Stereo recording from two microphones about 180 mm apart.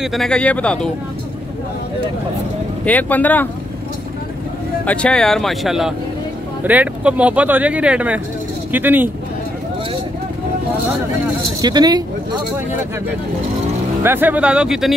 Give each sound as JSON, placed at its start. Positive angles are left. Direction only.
{"t": 0.0, "sound": "speech", "side_deg": 0}
{"t": 2.8, "sound": "speech", "side_deg": 10}
{"t": 4.8, "sound": "speech", "side_deg": 5}
{"t": 11.6, "sound": "speech", "side_deg": -20}
{"t": 14.0, "sound": "speech", "side_deg": -10}